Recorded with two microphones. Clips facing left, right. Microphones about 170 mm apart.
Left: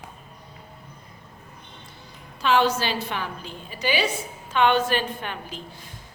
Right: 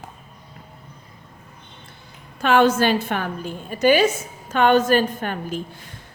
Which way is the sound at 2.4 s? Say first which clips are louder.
Right 5 dB; 50° right (ahead or behind).